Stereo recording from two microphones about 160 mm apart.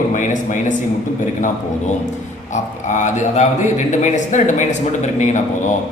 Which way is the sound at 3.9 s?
50° left (ahead or behind).